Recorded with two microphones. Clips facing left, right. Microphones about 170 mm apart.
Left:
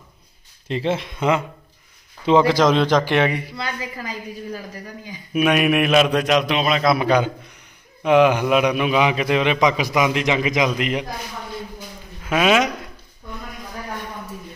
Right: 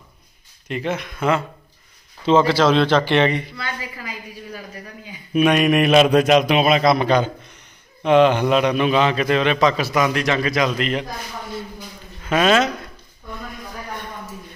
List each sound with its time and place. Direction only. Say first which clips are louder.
0.7 s a man's voice: left 2 dB; 30° left (ahead or behind); by 3.5 s 10° left (ahead or behind)
3.5 s a woman's voice: left 2 dB; 35° left (ahead or behind)
5.3 s a man's voice: right 2 dB; 5° left (ahead or behind)
6.9 s a man's voice: right 1 dB; 10° left (ahead or behind)
12.2 s speech: right 1 dB; 5° left (ahead or behind)